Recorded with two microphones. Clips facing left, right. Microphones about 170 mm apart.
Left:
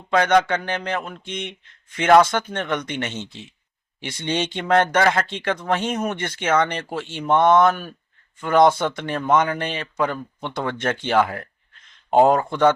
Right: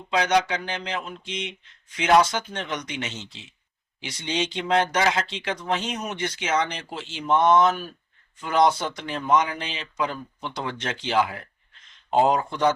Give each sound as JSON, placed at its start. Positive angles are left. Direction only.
{"t": 0.1, "sound": "speech", "side_deg": 55}